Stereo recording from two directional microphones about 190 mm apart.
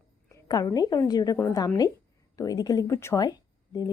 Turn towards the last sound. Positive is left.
turn(degrees=20)  # may be behind; listen again after turning